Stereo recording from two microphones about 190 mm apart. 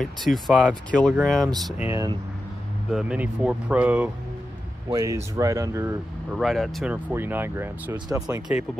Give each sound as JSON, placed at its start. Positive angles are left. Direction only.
{"t": 0.0, "sound": "speech", "side_deg": 0}
{"t": 1.9, "sound": "speech", "side_deg": -15}
{"t": 2.9, "sound": "speech", "side_deg": -5}
{"t": 6.3, "sound": "speech", "side_deg": 0}